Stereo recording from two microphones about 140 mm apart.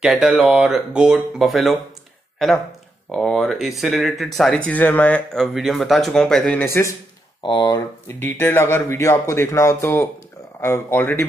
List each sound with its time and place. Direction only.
0.0 s speech: 5° right (ahead or behind)
4.6 s speech: 10° left (ahead or behind)
7.4 s speech: 30° left (ahead or behind)
8.1 s speech: 15° left (ahead or behind)